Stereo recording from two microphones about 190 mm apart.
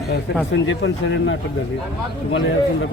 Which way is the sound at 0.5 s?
70° left (ahead or behind).